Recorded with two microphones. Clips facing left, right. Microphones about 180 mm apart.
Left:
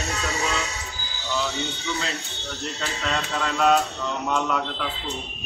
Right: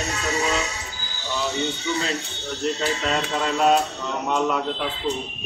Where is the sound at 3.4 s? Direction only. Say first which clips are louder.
Right 1 dB; 30° right (ahead or behind).